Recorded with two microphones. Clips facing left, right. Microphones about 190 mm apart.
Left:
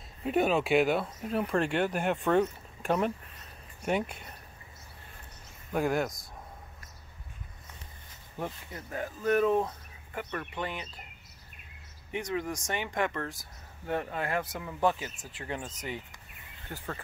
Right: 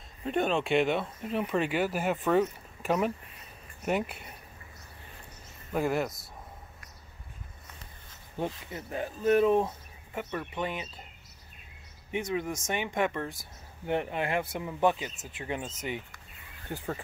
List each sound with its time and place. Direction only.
0.2 s speech: 5° left (ahead or behind)
5.7 s speech: centre (ahead or behind)
8.6 s speech: 20° right (ahead or behind)
12.1 s speech: 20° right (ahead or behind)